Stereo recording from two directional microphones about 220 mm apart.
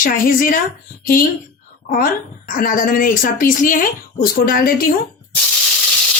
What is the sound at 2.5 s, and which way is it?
A woman's voice, 40° left (ahead or behind).